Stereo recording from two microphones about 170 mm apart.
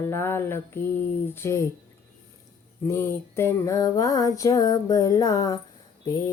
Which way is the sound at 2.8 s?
15° left (ahead or behind).